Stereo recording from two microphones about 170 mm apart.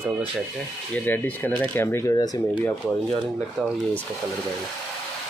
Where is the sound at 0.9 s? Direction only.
10° left (ahead or behind).